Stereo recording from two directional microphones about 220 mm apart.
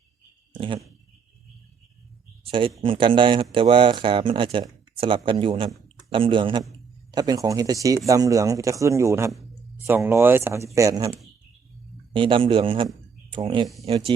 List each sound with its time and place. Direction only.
2.5 s a man's voice: 25° right (ahead or behind)
12.1 s speech: 25° right (ahead or behind)